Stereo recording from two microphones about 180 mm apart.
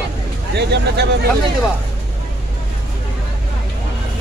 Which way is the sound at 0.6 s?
70° right (ahead or behind).